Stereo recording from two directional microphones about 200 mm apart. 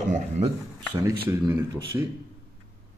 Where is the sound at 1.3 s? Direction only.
10° right (ahead or behind).